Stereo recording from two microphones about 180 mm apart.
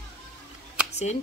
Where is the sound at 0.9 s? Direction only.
35° left (ahead or behind).